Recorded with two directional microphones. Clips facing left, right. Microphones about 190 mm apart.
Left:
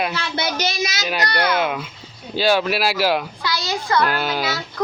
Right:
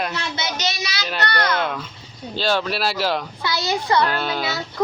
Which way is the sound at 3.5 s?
25° right (ahead or behind).